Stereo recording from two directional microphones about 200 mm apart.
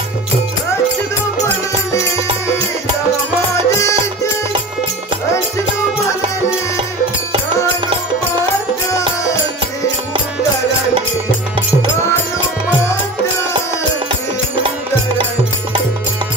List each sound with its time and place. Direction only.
1.9 s music: 15° left (ahead or behind)
3.5 s music: 15° left (ahead or behind)
8.9 s music: 15° left (ahead or behind)